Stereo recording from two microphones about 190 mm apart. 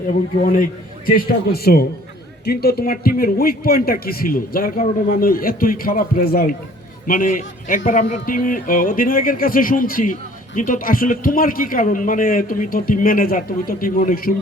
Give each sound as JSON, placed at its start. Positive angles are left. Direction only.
{"t": 0.1, "sound": "speech", "side_deg": 45}